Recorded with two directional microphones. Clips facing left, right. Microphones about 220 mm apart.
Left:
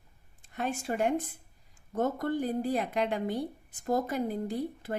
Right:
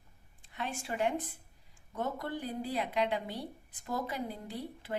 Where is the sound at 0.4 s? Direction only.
45° left (ahead or behind).